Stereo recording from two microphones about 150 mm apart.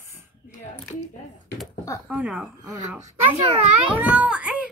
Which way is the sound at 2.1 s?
10° right (ahead or behind).